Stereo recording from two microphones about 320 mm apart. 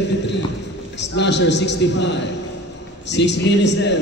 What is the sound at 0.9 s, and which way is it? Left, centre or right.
A man's voice, left.